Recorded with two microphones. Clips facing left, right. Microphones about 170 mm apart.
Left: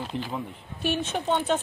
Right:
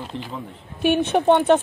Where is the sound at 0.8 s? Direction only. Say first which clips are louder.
Right 9 dB; 60° right (ahead or behind).